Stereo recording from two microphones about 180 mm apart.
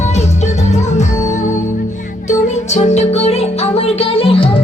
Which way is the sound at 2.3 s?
40° left (ahead or behind).